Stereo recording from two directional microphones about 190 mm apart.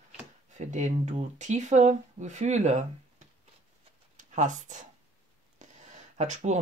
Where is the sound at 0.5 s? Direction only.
40° right (ahead or behind).